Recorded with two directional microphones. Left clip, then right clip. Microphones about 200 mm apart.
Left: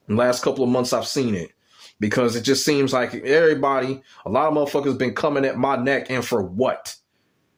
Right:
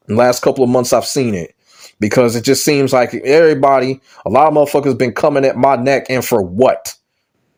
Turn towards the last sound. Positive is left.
turn(degrees=-35)  # may be behind; listen again after turning